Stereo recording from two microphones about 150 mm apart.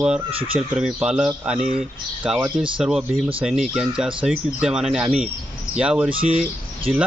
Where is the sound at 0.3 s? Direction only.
40° right (ahead or behind).